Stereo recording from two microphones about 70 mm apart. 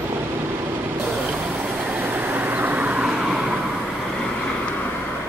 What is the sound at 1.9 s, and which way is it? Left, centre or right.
Vehicle, right.